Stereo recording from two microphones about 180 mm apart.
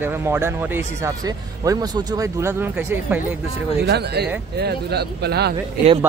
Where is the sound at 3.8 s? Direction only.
65° right (ahead or behind).